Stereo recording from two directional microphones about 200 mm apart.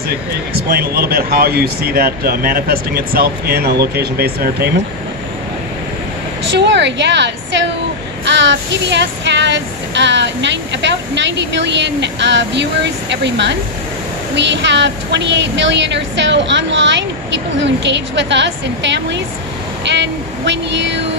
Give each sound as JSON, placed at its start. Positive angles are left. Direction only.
{"t": 0.7, "sound": "speech", "side_deg": -50}
{"t": 6.5, "sound": "female singing", "side_deg": -60}